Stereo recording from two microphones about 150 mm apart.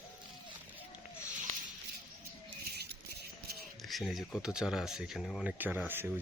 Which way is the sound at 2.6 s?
90° right.